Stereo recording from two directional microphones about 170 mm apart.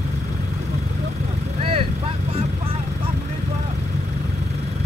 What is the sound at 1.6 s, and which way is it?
Vehicle, 35° right (ahead or behind).